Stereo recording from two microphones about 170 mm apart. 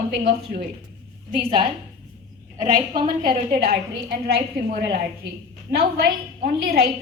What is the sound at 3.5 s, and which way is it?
A woman's voice, 60° right (ahead or behind).